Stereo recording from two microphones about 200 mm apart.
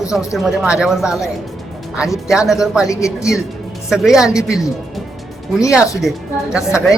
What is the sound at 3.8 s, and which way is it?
Speech, centre (ahead or behind).